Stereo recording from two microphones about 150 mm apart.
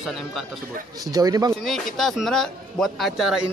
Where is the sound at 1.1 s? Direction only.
25° right (ahead or behind).